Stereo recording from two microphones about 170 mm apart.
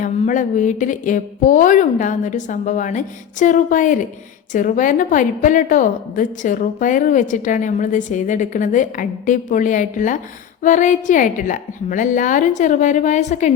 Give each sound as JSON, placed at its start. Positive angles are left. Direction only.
{"t": 0.0, "sound": "a woman's voice", "side_deg": 50}